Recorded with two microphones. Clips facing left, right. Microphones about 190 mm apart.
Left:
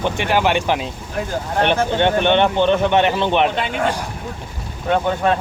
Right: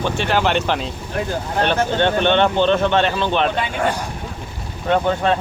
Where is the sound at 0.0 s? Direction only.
15° left (ahead or behind).